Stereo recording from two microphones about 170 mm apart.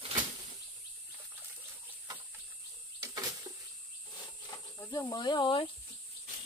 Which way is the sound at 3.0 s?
20° right (ahead or behind).